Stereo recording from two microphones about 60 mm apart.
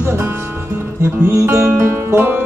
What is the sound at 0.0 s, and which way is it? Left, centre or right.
Music, right.